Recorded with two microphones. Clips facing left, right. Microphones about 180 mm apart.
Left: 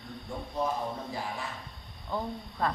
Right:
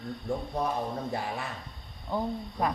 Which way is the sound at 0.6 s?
65° right (ahead or behind).